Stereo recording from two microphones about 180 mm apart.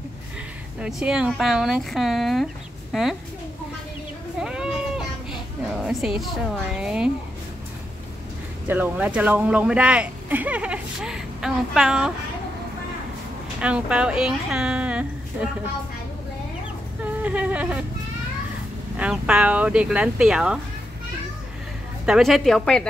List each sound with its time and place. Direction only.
0.7 s speech: 5° right (ahead or behind)
4.4 s a sound: 5° right (ahead or behind)
8.6 s speech: 10° right (ahead or behind)
13.6 s speech: 5° right (ahead or behind)
17.0 s a sound: 10° right (ahead or behind)
18.9 s speech: 5° right (ahead or behind)
22.0 s speech: centre (ahead or behind)